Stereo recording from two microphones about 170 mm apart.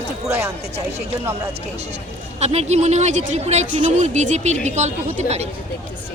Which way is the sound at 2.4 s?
40° right (ahead or behind).